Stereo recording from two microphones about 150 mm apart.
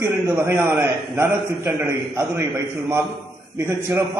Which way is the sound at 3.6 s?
15° right (ahead or behind).